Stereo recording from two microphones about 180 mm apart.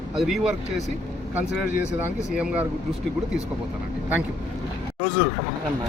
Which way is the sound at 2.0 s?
5° right (ahead or behind).